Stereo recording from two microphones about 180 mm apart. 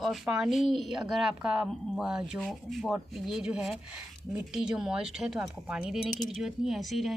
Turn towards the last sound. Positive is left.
turn(degrees=0)  # may be behind; listen again after turning